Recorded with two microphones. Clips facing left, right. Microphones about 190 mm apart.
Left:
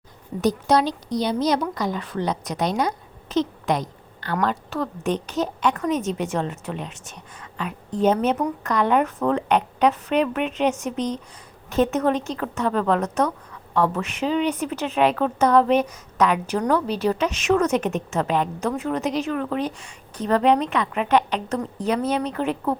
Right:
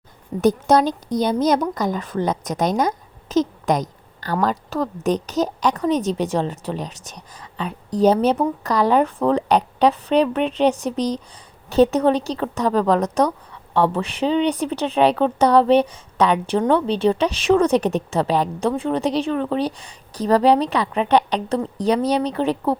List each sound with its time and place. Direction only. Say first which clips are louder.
0.4 s a woman's voice: right 4 dB; 50° right (ahead or behind)